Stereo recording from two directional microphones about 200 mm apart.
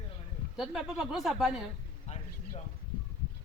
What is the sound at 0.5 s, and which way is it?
Speech, centre (ahead or behind).